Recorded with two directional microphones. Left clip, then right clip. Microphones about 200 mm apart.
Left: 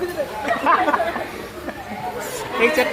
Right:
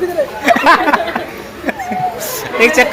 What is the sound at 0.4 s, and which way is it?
Chatter, 50° right (ahead or behind).